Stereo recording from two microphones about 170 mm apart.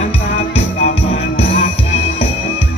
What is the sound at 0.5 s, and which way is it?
Music, 40° left (ahead or behind).